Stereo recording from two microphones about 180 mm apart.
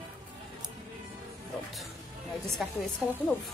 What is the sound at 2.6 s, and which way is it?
Speech, centre (ahead or behind).